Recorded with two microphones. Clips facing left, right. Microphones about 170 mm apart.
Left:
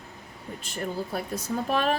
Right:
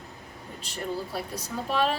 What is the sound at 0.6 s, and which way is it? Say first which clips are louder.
A woman's voice: left 1 dB; 50° left (ahead or behind).